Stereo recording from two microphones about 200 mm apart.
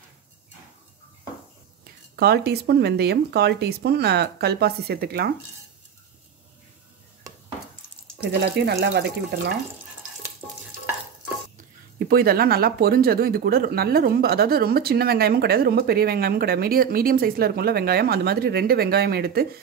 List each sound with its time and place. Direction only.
2.1 s speech: 55° right (ahead or behind)
8.5 s speech: 55° right (ahead or behind)
11.5 s speech: 50° right (ahead or behind)